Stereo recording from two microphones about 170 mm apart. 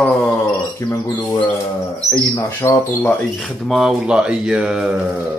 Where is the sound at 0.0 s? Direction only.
5° left (ahead or behind).